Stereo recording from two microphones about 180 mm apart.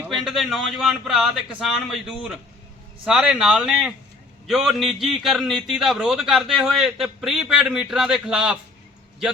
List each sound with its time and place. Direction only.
0.0 s a man's voice: centre (ahead or behind)